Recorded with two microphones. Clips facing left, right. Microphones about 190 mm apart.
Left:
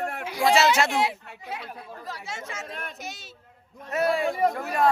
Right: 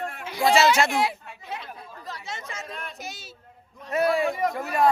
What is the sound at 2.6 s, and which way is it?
Speech, 50° left (ahead or behind).